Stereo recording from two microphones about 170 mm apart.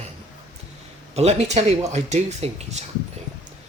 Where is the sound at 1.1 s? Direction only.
40° right (ahead or behind).